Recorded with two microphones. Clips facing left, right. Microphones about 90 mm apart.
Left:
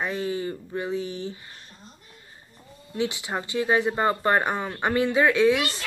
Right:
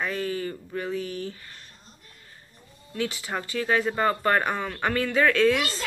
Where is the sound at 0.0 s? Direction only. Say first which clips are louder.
Left 1 dB; 20° left (ahead or behind).